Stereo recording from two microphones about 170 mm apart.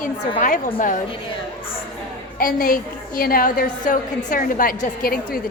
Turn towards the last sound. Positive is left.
turn(degrees=60)  # may be behind; listen again after turning